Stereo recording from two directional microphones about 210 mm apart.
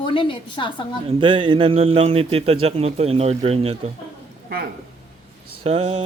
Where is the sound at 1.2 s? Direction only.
25° right (ahead or behind).